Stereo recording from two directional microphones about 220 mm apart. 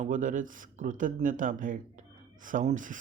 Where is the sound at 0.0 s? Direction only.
35° right (ahead or behind).